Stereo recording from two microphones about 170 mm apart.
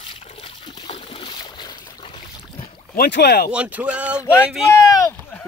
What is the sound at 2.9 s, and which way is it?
Speech, 75° left (ahead or behind).